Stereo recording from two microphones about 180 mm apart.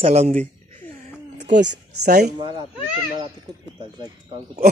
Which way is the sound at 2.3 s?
25° right (ahead or behind).